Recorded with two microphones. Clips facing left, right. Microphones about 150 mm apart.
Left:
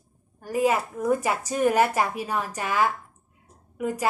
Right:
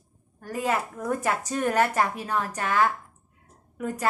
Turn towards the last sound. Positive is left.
turn(degrees=10)  # may be behind; listen again after turning